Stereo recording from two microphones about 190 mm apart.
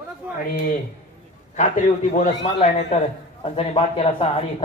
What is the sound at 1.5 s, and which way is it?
Speech, 40° left (ahead or behind).